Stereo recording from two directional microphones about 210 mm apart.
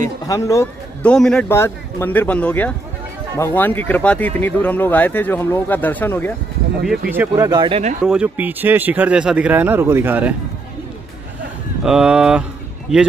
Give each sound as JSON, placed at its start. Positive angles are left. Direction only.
{"t": 0.3, "sound": "a man's voice", "side_deg": 15}
{"t": 1.1, "sound": "speech", "side_deg": 5}
{"t": 7.1, "sound": "speech", "side_deg": -10}
{"t": 8.0, "sound": "speech", "side_deg": -5}
{"t": 11.8, "sound": "speech", "side_deg": -5}